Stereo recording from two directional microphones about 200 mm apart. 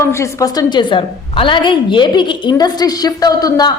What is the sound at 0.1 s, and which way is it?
A woman's voice, 15° left (ahead or behind).